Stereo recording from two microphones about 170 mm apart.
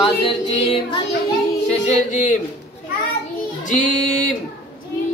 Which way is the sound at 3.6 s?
45° left (ahead or behind).